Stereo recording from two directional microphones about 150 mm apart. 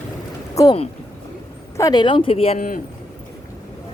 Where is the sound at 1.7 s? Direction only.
25° left (ahead or behind).